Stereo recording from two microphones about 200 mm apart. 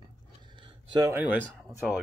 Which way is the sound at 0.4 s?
25° right (ahead or behind).